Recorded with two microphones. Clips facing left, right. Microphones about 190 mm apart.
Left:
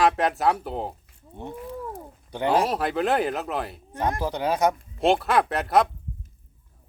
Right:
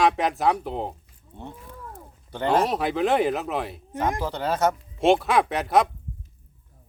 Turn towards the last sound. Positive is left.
turn(degrees=0)  # may be behind; listen again after turning